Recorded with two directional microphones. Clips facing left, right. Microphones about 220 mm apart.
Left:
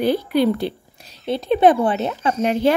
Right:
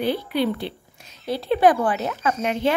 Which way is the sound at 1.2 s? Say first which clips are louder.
Left 3 dB; 25° left (ahead or behind).